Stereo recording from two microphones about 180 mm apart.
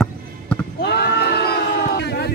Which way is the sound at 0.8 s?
65° left (ahead or behind).